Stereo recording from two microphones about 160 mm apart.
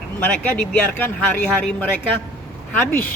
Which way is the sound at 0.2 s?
10° left (ahead or behind).